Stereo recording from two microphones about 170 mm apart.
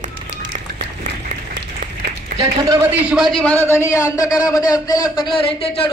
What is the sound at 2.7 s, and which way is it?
A man's voice, 10° right (ahead or behind).